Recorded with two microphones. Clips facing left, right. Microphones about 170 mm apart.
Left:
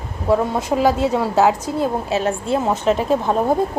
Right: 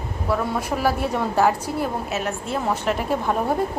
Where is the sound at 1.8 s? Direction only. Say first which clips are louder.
Left 8 dB; 30° left (ahead or behind).